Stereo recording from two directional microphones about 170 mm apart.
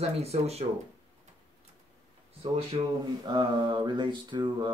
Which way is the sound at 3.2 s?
25° right (ahead or behind).